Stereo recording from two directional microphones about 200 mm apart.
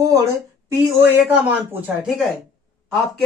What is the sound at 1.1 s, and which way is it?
Speech, 10° right (ahead or behind).